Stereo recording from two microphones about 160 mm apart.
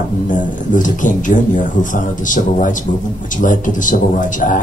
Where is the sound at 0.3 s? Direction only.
55° left (ahead or behind).